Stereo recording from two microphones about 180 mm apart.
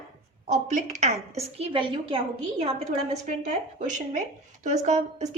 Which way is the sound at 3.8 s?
40° right (ahead or behind).